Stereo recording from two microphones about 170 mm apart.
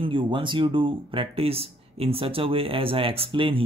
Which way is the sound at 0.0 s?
30° right (ahead or behind).